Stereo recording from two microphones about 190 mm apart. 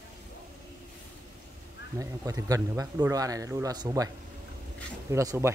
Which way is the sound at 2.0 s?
15° right (ahead or behind).